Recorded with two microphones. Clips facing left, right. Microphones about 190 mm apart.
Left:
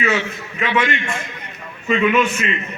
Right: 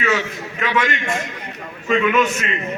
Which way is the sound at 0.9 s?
45° right (ahead or behind).